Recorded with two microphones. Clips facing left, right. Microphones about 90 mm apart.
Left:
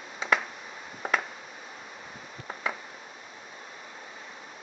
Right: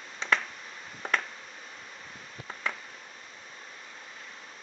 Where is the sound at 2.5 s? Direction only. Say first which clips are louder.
Left 2 dB; 15° left (ahead or behind).